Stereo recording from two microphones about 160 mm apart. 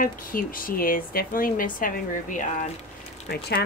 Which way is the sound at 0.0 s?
60° left (ahead or behind).